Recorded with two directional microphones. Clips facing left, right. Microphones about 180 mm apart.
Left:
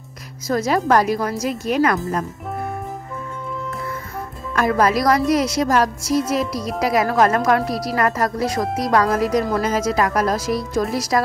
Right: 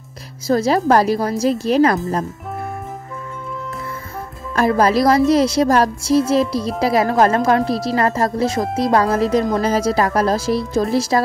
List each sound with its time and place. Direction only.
0.5 s a woman's voice: 30° right (ahead or behind)
4.6 s speech: 30° right (ahead or behind)